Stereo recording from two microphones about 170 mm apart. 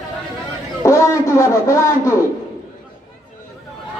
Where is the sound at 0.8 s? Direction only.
15° left (ahead or behind).